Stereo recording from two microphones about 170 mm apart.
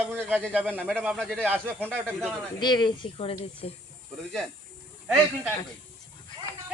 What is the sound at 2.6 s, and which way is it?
Speech, 25° left (ahead or behind).